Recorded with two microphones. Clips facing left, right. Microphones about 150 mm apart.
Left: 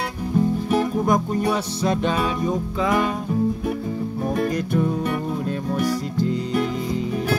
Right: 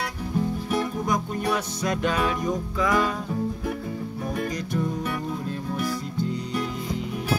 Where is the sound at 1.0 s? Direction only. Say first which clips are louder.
Left 6 dB; 50° left (ahead or behind).